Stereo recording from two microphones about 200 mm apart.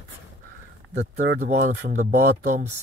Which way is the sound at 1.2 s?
55° right (ahead or behind).